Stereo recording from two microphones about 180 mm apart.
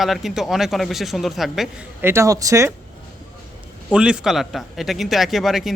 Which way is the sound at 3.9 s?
5° right (ahead or behind).